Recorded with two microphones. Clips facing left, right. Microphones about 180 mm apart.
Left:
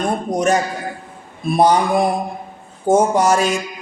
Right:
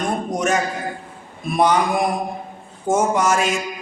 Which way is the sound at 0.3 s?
35° left (ahead or behind).